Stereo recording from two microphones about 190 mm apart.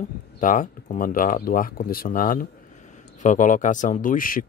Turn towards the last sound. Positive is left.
turn(degrees=45)  # may be behind; listen again after turning